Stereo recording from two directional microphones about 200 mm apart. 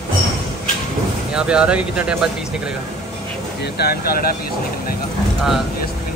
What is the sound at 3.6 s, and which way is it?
Speech, 55° left (ahead or behind).